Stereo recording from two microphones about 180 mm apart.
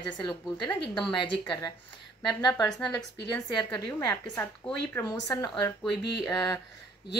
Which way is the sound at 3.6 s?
15° left (ahead or behind).